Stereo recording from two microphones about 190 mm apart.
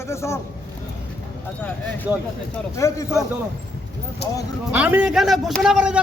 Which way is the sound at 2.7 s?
15° left (ahead or behind).